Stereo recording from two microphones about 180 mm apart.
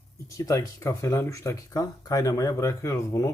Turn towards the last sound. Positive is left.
turn(degrees=20)  # may be behind; listen again after turning